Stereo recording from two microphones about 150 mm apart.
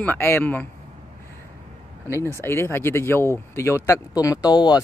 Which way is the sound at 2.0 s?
15° left (ahead or behind).